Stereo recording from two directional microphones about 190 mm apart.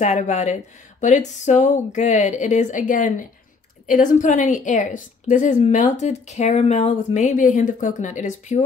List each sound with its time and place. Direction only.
0.0 s a woman's voice: 40° left (ahead or behind)